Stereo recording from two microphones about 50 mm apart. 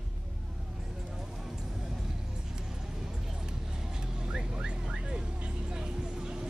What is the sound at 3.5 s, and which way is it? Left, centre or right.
Vehicle, centre.